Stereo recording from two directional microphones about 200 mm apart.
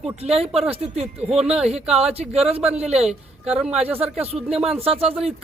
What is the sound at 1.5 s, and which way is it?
Speech, 5° right (ahead or behind).